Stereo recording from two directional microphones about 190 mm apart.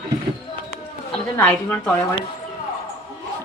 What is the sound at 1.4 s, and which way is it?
Speech, 10° left (ahead or behind).